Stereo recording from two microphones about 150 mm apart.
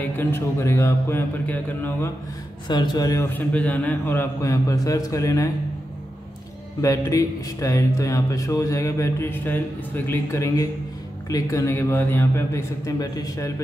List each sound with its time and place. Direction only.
0.0 s a man's voice: 15° left (ahead or behind)
2.7 s a man's voice: 30° left (ahead or behind)
3.3 s a man's voice: 10° left (ahead or behind)
6.8 s a man's voice: 20° left (ahead or behind)